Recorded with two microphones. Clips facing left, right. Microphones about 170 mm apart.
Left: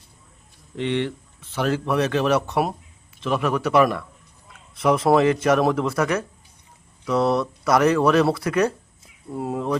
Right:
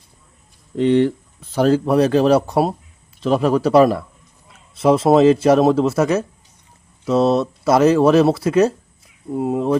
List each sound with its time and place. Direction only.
0.8 s speech: 40° right (ahead or behind); by 9.7 s 20° right (ahead or behind)